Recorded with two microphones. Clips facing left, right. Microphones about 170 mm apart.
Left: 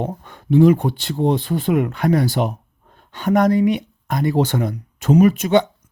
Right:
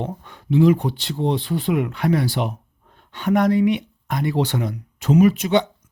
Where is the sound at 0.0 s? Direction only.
45° left (ahead or behind).